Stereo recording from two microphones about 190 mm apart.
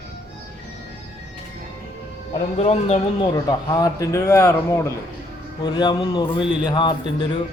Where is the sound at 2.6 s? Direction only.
35° left (ahead or behind).